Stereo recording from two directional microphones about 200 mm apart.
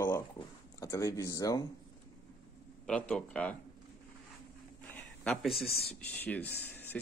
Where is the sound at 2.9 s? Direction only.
5° left (ahead or behind).